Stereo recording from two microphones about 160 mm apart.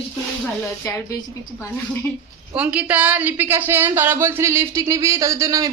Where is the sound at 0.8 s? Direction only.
20° left (ahead or behind).